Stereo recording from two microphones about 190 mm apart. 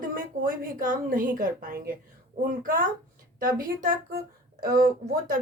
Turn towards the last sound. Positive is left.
turn(degrees=-50)  # may be behind; listen again after turning